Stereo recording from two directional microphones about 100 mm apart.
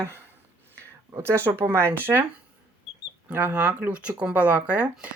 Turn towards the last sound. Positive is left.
turn(degrees=-15)  # may be behind; listen again after turning